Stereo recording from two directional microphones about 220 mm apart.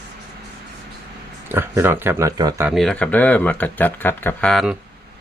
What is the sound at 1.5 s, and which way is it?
Speech, 10° right (ahead or behind).